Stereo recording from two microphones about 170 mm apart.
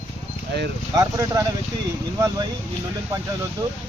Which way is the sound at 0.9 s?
20° right (ahead or behind).